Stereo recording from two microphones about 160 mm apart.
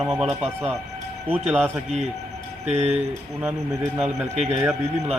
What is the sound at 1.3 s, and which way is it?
Speech, 10° right (ahead or behind).